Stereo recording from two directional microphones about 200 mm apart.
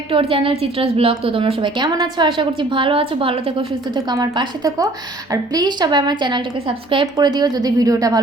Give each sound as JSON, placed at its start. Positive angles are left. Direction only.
{"t": 0.1, "sound": "a woman's voice", "side_deg": -25}